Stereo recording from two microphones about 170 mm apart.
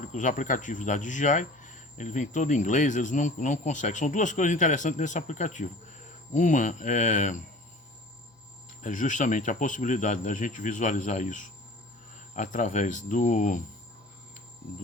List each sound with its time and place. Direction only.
0.0 s speech: 45° left (ahead or behind)
8.8 s speech: 50° left (ahead or behind)